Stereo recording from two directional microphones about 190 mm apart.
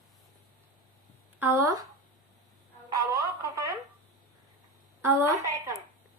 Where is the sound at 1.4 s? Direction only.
15° right (ahead or behind).